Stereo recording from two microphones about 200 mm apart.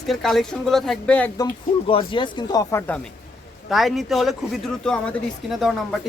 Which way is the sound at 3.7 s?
Centre (ahead or behind).